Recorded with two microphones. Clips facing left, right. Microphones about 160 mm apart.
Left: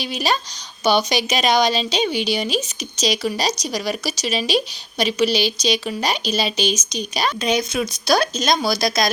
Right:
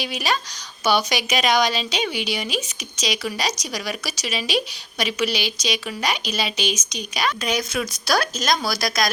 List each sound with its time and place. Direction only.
0.0 s a woman's voice: 30° left (ahead or behind)